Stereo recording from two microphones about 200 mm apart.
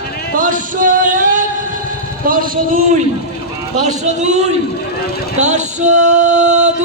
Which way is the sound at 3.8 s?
35° right (ahead or behind).